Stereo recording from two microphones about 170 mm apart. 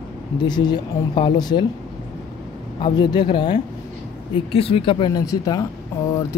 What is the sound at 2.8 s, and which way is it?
Speech, 25° left (ahead or behind).